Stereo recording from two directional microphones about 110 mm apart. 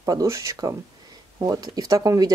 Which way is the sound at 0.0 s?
30° right (ahead or behind).